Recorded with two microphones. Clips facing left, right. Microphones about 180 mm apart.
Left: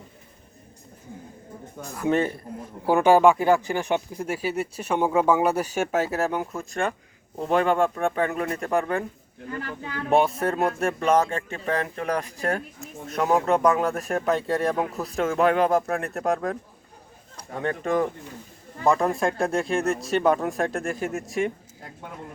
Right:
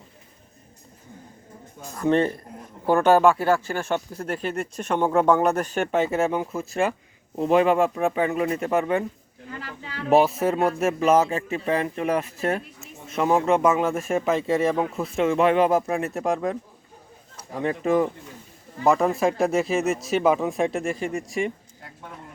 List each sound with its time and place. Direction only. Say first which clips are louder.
2.0 s speech: right 2 dB; 5° left (ahead or behind)
9.6 s speech: left 5 dB; 50° left (ahead or behind)
10.1 s speech: right 3 dB; 5° right (ahead or behind)